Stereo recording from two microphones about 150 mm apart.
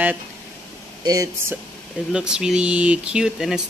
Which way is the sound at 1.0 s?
25° right (ahead or behind).